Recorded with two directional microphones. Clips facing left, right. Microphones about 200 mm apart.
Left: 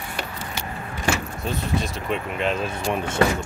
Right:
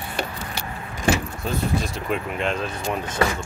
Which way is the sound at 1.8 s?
Centre (ahead or behind).